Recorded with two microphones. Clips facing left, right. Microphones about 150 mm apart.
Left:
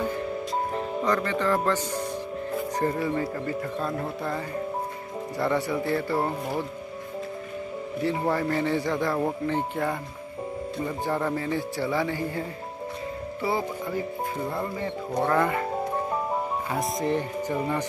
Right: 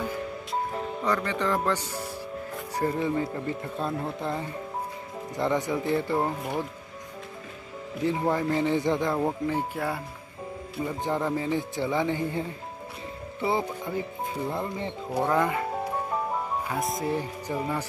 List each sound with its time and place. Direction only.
1.0 s speech: 10° right (ahead or behind)
8.0 s speech: 15° right (ahead or behind)
11.1 s speech: 15° right (ahead or behind)
16.7 s speech: centre (ahead or behind)